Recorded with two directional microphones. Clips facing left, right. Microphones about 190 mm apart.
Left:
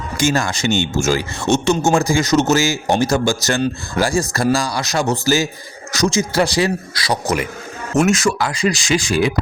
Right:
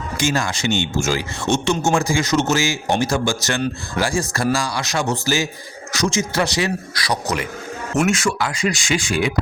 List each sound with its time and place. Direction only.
0.2 s speech: 45° left (ahead or behind); by 7.4 s 25° left (ahead or behind)
7.9 s speech: 40° left (ahead or behind)